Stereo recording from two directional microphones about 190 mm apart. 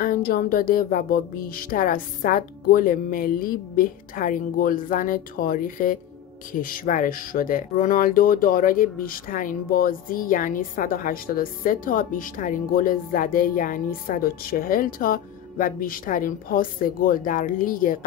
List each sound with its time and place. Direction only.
0.0 s speech: 50° left (ahead or behind)